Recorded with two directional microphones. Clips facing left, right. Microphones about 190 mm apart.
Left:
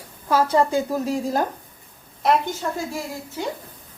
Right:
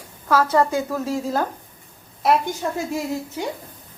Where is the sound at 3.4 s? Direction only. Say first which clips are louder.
Left 2 dB; 15° right (ahead or behind).